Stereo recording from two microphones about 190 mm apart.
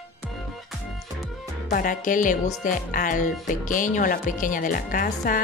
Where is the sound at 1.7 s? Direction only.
45° left (ahead or behind).